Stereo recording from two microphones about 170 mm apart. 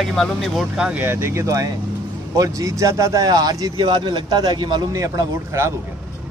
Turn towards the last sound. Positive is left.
turn(degrees=-15)  # may be behind; listen again after turning